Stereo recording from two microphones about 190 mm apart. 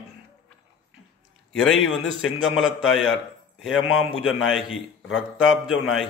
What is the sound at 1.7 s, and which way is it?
Speech, 90° left.